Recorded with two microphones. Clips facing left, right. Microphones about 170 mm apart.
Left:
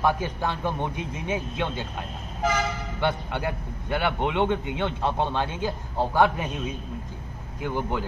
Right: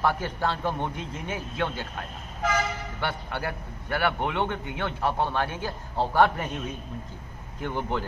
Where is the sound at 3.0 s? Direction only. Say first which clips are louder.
Left 5 dB; 20° left (ahead or behind).